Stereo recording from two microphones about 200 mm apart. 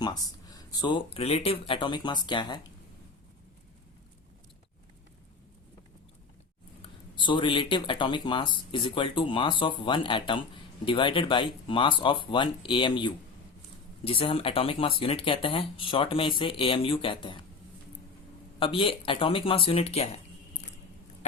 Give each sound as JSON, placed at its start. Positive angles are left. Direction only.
{"t": 0.5, "sound": "speech", "side_deg": 20}
{"t": 7.2, "sound": "speech", "side_deg": 25}
{"t": 18.6, "sound": "speech", "side_deg": 25}